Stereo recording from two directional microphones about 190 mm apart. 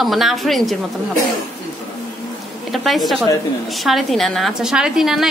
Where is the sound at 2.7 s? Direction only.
Centre (ahead or behind).